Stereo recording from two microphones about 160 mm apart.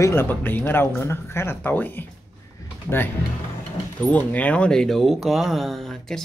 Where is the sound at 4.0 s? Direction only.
10° left (ahead or behind).